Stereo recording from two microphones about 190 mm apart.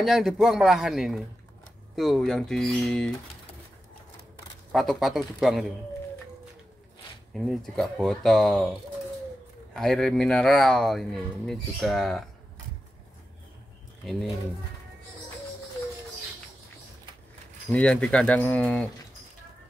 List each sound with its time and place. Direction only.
0.0 s speech: centre (ahead or behind)
4.7 s speech: centre (ahead or behind)
7.3 s speech: centre (ahead or behind)
9.8 s speech: centre (ahead or behind)
14.0 s speech: centre (ahead or behind)
17.6 s speech: 5° left (ahead or behind)